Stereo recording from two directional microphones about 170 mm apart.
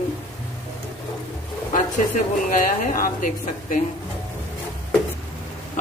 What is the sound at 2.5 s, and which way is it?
Speech, 50° left (ahead or behind).